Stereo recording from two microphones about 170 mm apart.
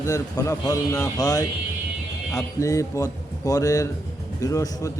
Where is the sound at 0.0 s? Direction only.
20° left (ahead or behind).